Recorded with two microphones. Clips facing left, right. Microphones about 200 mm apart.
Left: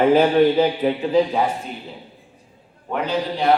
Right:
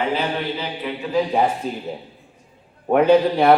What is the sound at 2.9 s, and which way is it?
Speech, 55° right (ahead or behind).